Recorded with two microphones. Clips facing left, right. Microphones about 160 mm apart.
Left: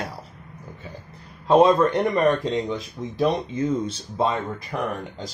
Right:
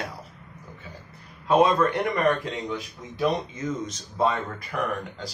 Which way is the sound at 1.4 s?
25° left (ahead or behind).